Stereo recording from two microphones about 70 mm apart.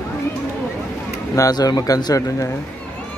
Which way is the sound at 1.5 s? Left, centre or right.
Left.